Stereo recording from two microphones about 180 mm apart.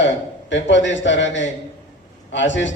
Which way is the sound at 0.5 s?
90° left.